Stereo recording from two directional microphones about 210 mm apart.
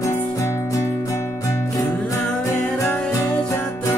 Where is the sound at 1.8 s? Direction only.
5° left (ahead or behind).